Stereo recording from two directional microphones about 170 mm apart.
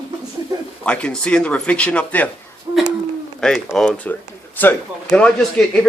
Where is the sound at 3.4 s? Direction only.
Centre (ahead or behind).